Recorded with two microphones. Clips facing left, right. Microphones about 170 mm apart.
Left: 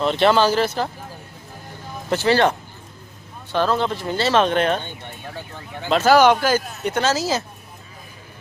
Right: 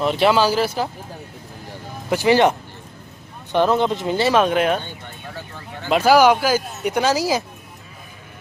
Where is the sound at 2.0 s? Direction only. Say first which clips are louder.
Right 2 dB; 15° right (ahead or behind).